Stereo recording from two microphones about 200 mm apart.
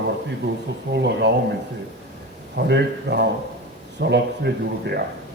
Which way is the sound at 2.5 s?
55° right (ahead or behind).